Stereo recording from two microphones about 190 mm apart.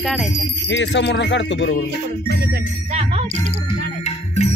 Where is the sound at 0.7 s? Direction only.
70° left (ahead or behind).